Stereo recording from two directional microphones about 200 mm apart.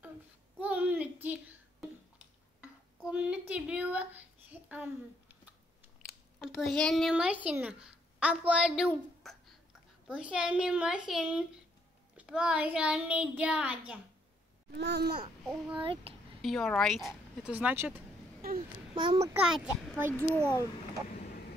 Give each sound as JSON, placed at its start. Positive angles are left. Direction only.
{"t": 0.6, "sound": "a sound", "side_deg": -10}
{"t": 3.0, "sound": "a child's voice", "side_deg": -5}
{"t": 14.7, "sound": "babbling", "side_deg": -55}
{"t": 15.4, "sound": "a child's voice", "side_deg": 0}
{"t": 15.8, "sound": "speech", "side_deg": -30}
{"t": 16.3, "sound": "a child's voice", "side_deg": 0}
{"t": 18.9, "sound": "speech", "side_deg": -20}
{"t": 19.3, "sound": "a child's voice", "side_deg": -5}